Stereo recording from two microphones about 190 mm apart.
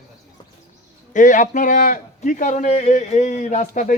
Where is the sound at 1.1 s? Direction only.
40° left (ahead or behind).